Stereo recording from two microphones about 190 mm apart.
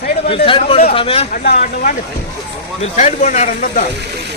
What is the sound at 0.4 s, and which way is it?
Speech, 30° left (ahead or behind).